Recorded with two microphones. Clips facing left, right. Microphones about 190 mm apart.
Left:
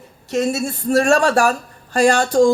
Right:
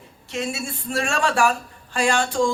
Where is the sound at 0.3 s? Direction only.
40° left (ahead or behind).